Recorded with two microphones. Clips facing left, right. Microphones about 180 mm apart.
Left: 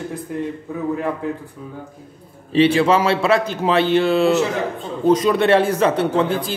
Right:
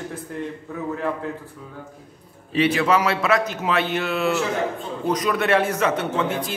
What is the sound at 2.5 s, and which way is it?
A man's voice, 30° left (ahead or behind).